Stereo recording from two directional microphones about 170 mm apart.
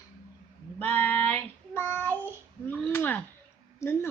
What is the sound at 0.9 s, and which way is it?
Child singing, 10° left (ahead or behind).